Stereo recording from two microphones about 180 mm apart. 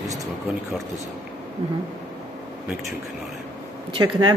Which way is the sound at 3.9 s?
30° right (ahead or behind).